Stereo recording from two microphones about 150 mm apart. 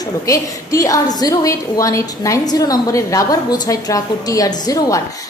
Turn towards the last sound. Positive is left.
turn(degrees=25)  # may be behind; listen again after turning